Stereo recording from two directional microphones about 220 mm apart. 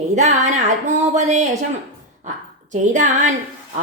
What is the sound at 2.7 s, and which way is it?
Speech, 35° right (ahead or behind).